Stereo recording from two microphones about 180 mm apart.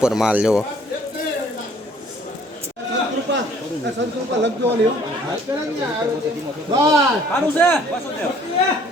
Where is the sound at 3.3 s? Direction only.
75° right (ahead or behind).